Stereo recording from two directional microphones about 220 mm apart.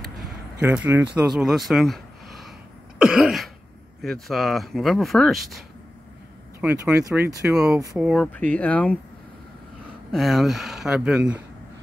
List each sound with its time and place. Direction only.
0.6 s speech: 5° right (ahead or behind)
3.0 s cough: centre (ahead or behind)
4.0 s speech: centre (ahead or behind)
6.6 s speech: 5° right (ahead or behind)
10.1 s speech: centre (ahead or behind)